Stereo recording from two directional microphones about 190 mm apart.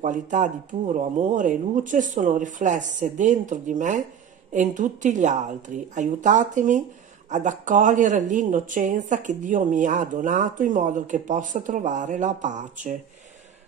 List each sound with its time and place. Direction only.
0.0 s speech: 40° right (ahead or behind)